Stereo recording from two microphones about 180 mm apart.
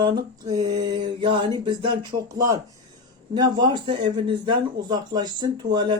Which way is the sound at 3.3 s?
25° right (ahead or behind).